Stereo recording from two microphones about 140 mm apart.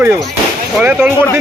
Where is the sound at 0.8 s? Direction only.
5° right (ahead or behind).